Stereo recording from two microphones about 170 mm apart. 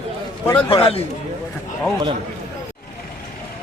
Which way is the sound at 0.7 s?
35° left (ahead or behind).